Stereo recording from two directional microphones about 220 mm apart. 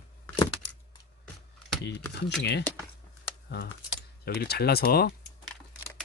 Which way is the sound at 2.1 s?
50° left (ahead or behind).